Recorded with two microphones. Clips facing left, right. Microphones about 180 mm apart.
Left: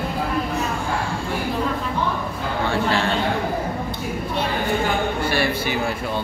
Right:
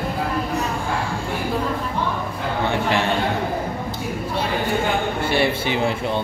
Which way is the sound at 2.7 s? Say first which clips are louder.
Even; 20° right (ahead or behind).